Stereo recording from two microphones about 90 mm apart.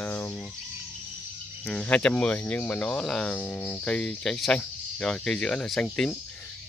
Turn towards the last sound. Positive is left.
turn(degrees=5)  # may be behind; listen again after turning